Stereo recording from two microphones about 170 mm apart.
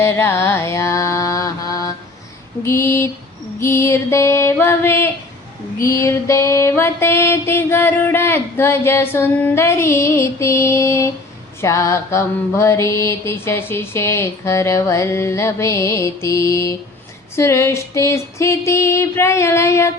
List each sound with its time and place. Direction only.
0.0 s mantra: 15° left (ahead or behind)
2.6 s music: 15° left (ahead or behind)